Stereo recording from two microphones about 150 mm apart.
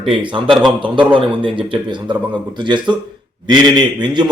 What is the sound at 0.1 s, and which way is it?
Speech, 35° right (ahead or behind).